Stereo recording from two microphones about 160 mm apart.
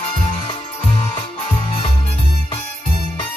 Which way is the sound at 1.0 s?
35° left (ahead or behind).